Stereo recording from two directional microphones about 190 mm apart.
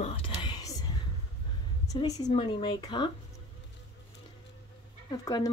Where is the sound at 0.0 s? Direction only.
30° left (ahead or behind).